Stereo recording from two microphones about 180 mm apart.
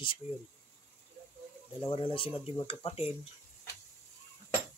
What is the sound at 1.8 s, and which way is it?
Speech, 30° left (ahead or behind).